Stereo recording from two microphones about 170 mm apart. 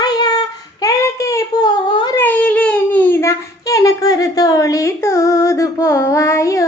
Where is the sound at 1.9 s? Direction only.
30° left (ahead or behind).